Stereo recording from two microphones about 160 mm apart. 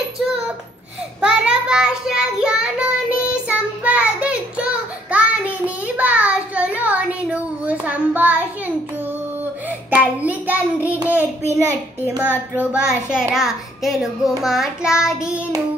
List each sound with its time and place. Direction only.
1.2 s child singing: 5° right (ahead or behind)
12.5 s a child's voice: 5° right (ahead or behind)